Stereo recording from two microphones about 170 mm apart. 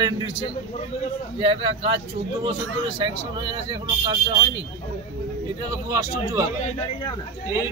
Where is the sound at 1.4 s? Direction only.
30° right (ahead or behind).